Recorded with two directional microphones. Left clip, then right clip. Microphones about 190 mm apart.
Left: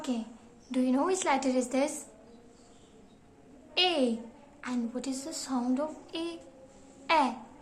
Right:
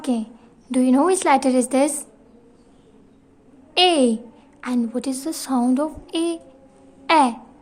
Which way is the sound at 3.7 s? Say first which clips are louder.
Right 11 dB; 65° right (ahead or behind).